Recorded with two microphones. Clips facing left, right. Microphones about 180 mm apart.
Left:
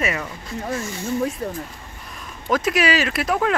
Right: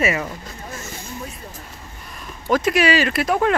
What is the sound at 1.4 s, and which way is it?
Speech, 70° left (ahead or behind).